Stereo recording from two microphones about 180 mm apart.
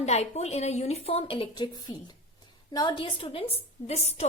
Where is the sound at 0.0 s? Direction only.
35° left (ahead or behind).